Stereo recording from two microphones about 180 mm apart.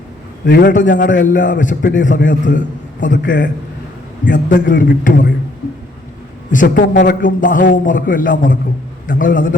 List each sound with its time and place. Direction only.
0.4 s a man's voice: 70° left (ahead or behind)
0.7 s a man's voice: 45° left (ahead or behind)
6.5 s a man's voice: 45° left (ahead or behind)